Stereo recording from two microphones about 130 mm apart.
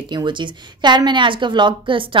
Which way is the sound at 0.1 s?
35° right (ahead or behind).